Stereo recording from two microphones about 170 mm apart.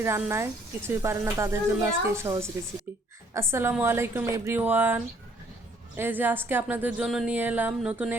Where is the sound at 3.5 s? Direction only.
10° right (ahead or behind).